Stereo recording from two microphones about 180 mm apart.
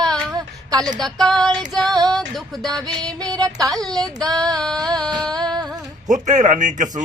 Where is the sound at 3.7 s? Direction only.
Centre (ahead or behind).